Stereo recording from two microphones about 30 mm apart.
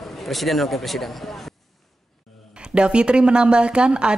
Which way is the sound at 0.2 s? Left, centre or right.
Centre.